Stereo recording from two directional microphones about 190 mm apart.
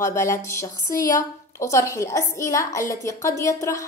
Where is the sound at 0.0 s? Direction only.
15° left (ahead or behind).